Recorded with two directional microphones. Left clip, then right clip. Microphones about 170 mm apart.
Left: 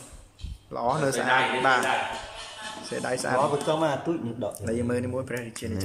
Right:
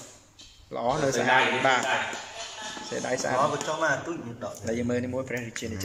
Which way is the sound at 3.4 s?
25° left (ahead or behind).